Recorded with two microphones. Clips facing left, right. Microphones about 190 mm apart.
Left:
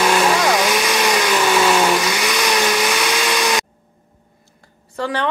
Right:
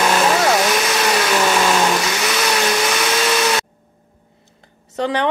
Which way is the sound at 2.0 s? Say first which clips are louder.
Left 1 dB; 10° left (ahead or behind).